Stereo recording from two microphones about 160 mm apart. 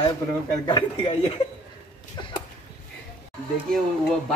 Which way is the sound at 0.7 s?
30° left (ahead or behind).